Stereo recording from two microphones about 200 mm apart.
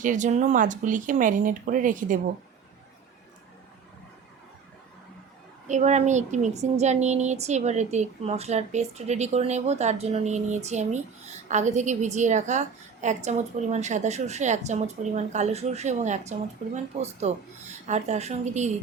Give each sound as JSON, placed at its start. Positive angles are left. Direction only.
{"t": 0.0, "sound": "a woman's voice", "side_deg": -40}
{"t": 5.6, "sound": "a woman's voice", "side_deg": -35}